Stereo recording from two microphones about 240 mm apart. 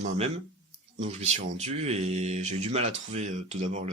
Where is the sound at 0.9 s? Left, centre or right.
Right.